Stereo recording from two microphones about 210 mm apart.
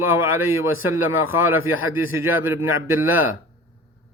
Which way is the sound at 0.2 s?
75° left (ahead or behind).